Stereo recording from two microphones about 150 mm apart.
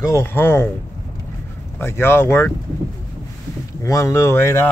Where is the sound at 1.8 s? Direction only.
15° left (ahead or behind).